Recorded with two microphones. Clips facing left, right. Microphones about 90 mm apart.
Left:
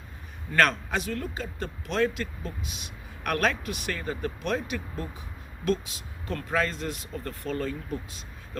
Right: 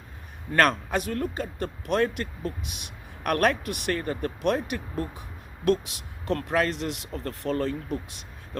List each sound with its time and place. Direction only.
0.6 s speech: 45° right (ahead or behind); by 8.2 s 65° right (ahead or behind)